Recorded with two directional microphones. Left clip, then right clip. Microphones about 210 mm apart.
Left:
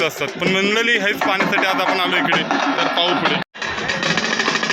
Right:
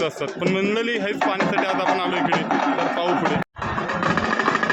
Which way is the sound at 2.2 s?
40° left (ahead or behind).